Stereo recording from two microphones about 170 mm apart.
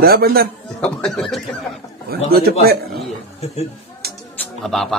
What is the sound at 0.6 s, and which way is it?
Speech, 5° left (ahead or behind).